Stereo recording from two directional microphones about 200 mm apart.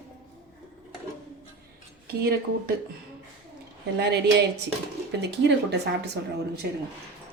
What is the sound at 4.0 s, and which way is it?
Speech, 55° right (ahead or behind).